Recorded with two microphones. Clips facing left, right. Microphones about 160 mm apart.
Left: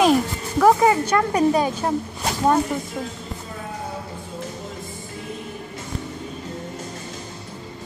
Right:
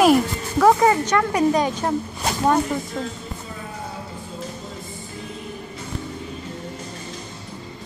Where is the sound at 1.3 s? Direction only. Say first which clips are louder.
Left 1 dB; 30° left (ahead or behind).